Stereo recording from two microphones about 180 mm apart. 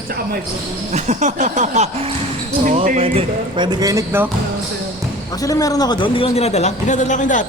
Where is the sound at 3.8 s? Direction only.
15° right (ahead or behind).